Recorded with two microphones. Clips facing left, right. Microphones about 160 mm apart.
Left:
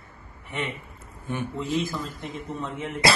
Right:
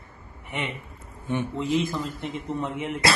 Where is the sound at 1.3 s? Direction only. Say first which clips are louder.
Right 3 dB; 20° right (ahead or behind).